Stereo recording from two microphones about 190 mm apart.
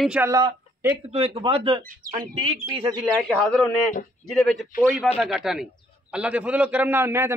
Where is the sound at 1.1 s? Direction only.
30° right (ahead or behind).